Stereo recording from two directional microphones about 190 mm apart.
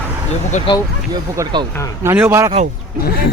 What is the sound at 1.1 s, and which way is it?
A man's voice, 20° right (ahead or behind).